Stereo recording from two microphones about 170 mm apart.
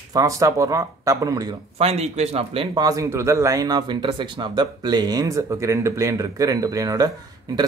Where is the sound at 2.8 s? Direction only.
20° right (ahead or behind).